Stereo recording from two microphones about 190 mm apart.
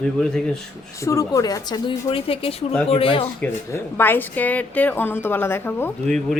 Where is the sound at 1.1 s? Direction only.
20° left (ahead or behind).